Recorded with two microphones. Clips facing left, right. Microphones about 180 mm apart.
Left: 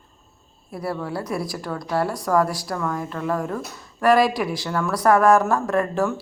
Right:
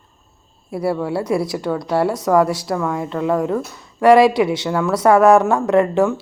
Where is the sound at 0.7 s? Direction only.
5° right (ahead or behind).